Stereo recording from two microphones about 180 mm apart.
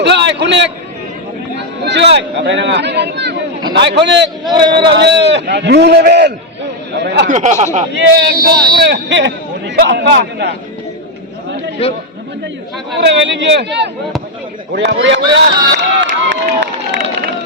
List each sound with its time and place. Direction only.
0.0 s a sound: 75° right (ahead or behind)
1.5 s a man's voice: 70° right (ahead or behind)
7.3 s speech: 40° right (ahead or behind)
7.9 s a man's voice: 65° right (ahead or behind)
11.8 s a man's voice: 35° left (ahead or behind)
13.1 s a man's voice: 80° right
15.7 s crowd: 80° right